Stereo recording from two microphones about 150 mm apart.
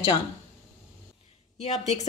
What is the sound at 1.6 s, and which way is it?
Speech, 45° left (ahead or behind).